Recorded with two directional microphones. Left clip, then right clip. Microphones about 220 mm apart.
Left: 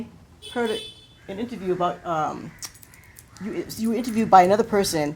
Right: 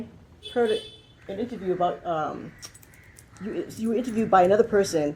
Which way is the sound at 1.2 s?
35° left (ahead or behind).